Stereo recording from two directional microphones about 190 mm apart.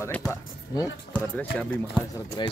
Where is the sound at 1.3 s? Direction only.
10° left (ahead or behind).